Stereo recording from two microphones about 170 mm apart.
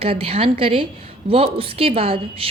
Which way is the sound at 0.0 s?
35° right (ahead or behind).